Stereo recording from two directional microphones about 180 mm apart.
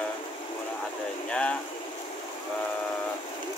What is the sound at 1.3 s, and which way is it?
Speech, 5° left (ahead or behind).